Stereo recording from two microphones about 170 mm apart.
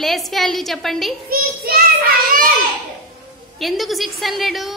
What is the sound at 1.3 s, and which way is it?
A child's voice, 60° right (ahead or behind).